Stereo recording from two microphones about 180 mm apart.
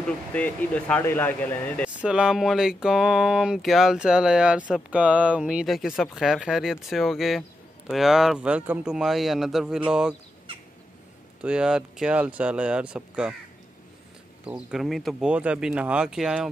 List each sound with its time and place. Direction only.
0.3 s speech: 10° left (ahead or behind)
2.0 s speech: 5° right (ahead or behind)
11.4 s speech: 5° right (ahead or behind)
14.4 s speech: 5° right (ahead or behind)